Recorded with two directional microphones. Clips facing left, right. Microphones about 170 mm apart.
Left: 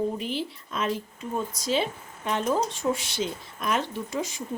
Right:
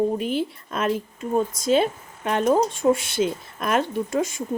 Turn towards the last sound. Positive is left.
turn(degrees=-50)  # may be behind; listen again after turning